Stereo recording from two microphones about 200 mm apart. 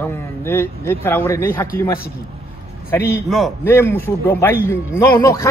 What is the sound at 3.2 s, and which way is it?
Speech, centre (ahead or behind).